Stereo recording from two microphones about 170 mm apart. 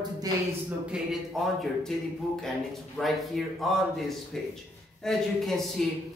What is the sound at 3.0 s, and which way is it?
A man's voice, centre (ahead or behind).